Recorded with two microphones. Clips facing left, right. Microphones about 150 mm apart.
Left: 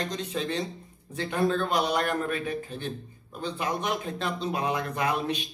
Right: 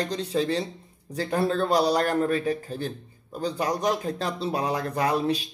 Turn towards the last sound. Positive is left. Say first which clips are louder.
# right 4 dB
turn(degrees=-35)  # may be behind; listen again after turning